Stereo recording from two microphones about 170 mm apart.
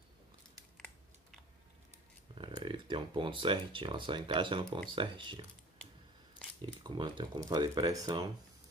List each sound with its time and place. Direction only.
0.7 s typing: centre (ahead or behind)
2.3 s speech: 30° right (ahead or behind)
6.6 s speech: 25° right (ahead or behind)